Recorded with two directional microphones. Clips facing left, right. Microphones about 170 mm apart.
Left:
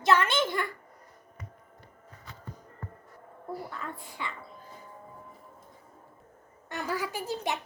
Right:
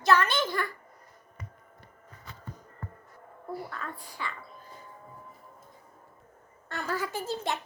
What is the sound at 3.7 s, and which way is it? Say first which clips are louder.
Speech: even; 20° left (ahead or behind).